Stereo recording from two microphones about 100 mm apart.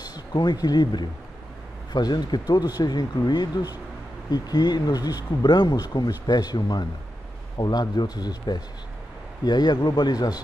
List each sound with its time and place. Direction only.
0.0 s speech: 45° left (ahead or behind)